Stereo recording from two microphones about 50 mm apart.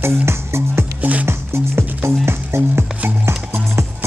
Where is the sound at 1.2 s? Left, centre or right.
Right.